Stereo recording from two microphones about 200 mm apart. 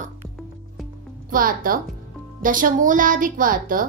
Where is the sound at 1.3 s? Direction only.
45° right (ahead or behind).